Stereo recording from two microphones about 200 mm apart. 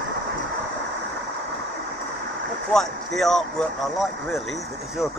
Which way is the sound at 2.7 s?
Centre (ahead or behind).